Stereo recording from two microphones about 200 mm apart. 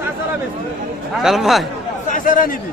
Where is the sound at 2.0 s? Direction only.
40° left (ahead or behind).